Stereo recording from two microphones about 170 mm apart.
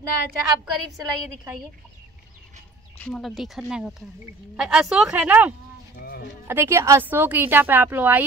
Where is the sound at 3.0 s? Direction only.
5° left (ahead or behind).